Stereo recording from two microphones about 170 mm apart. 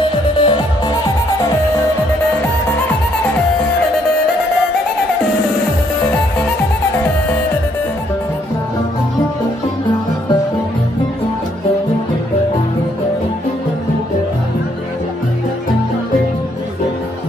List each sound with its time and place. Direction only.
0.0 s music: 30° left (ahead or behind)